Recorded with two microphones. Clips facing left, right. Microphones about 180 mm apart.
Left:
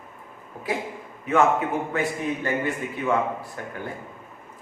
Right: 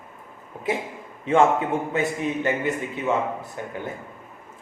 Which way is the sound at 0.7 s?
25° right (ahead or behind).